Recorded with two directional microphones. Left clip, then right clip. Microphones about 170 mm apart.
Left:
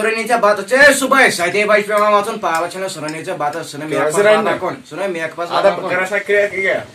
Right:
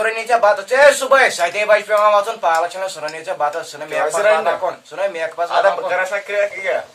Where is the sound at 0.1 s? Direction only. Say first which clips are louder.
Left 2 dB; 25° right (ahead or behind).